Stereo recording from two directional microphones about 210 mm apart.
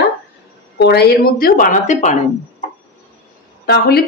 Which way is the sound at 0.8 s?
50° left (ahead or behind).